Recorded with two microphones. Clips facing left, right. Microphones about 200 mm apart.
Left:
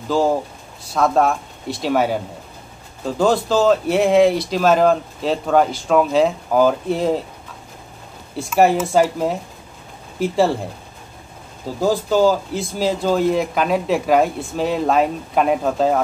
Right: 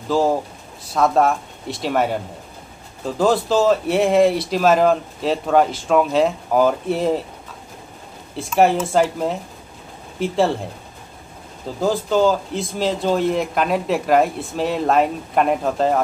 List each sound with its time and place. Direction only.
0.9 s speech: centre (ahead or behind)
3.2 s speech: 5° right (ahead or behind)
8.4 s speech: 5° left (ahead or behind)
11.8 s speech: 5° left (ahead or behind)